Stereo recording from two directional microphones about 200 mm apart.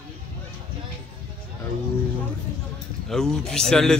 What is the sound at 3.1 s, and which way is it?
Speech, centre (ahead or behind).